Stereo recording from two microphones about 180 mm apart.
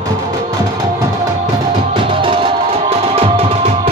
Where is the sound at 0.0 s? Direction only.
20° right (ahead or behind).